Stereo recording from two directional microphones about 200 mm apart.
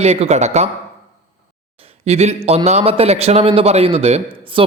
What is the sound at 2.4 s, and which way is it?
A man's voice, 30° right (ahead or behind).